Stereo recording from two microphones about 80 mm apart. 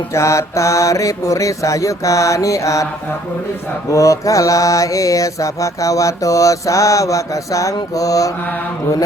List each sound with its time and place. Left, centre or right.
0.1 s mantra: left
3.9 s mantra: left